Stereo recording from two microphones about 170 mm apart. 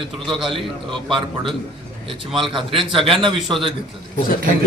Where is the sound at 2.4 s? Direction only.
30° right (ahead or behind).